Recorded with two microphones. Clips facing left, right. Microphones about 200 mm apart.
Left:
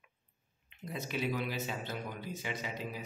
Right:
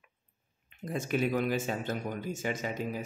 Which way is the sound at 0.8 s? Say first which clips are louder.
Right 6 dB; 50° right (ahead or behind).